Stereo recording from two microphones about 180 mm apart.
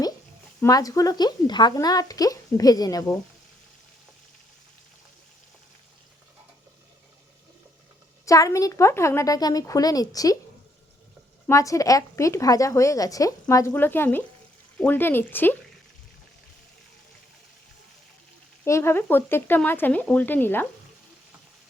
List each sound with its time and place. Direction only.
0.6 s speech: 20° left (ahead or behind)
8.2 s speech: 15° left (ahead or behind)
11.4 s a woman's voice: 15° left (ahead or behind)
18.6 s a woman's voice: 15° left (ahead or behind)